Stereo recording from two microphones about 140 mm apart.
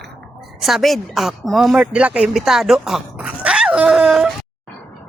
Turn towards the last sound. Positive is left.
turn(degrees=-5)  # may be behind; listen again after turning